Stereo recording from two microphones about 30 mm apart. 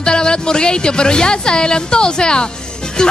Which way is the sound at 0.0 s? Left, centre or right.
Left.